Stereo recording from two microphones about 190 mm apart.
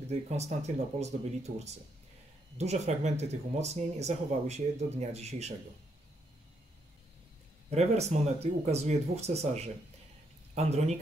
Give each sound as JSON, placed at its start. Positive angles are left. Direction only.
{"t": 0.1, "sound": "speech", "side_deg": -35}
{"t": 7.7, "sound": "speech", "side_deg": -35}